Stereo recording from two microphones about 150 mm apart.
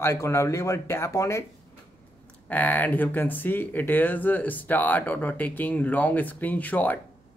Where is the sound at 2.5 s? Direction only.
10° left (ahead or behind).